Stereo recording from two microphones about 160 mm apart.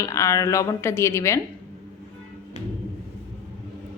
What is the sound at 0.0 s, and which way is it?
A woman's voice, 20° left (ahead or behind).